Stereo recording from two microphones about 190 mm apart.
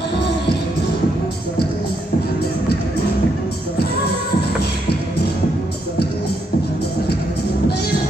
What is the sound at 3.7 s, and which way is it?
Music, 60° left (ahead or behind).